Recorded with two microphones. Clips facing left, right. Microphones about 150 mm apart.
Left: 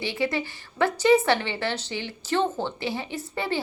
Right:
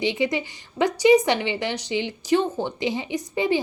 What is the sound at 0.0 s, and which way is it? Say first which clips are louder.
A woman's voice: right 3 dB; 20° right (ahead or behind).